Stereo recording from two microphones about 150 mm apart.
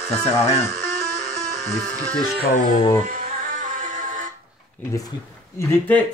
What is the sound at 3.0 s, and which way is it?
Music, 60° right (ahead or behind).